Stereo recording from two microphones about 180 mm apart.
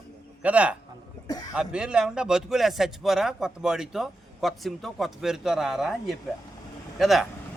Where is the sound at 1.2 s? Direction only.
20° left (ahead or behind).